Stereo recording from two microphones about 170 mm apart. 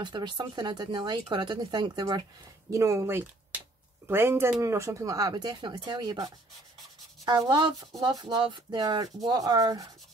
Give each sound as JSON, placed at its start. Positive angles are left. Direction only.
{"t": 0.0, "sound": "speech", "side_deg": -25}